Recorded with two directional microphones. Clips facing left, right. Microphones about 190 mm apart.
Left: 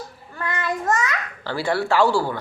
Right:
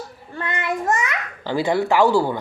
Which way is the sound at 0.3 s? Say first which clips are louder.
Right 1 dB; 20° right (ahead or behind).